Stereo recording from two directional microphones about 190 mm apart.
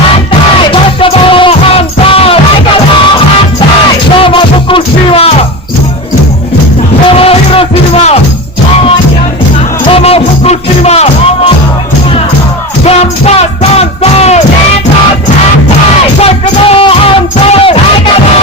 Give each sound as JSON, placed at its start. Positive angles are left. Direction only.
{"t": 0.7, "sound": "music", "side_deg": 30}
{"t": 4.2, "sound": "music", "side_deg": 25}
{"t": 7.2, "sound": "music", "side_deg": 30}
{"t": 9.9, "sound": "music", "side_deg": 30}
{"t": 12.8, "sound": "music", "side_deg": 35}
{"t": 16.2, "sound": "music", "side_deg": 30}